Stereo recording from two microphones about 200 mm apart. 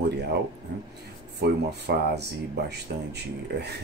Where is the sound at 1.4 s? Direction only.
55° right (ahead or behind).